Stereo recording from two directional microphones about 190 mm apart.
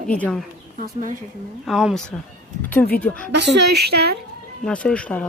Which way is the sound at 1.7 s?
Centre (ahead or behind).